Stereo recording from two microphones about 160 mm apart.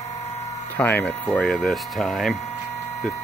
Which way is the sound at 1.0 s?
5° left (ahead or behind).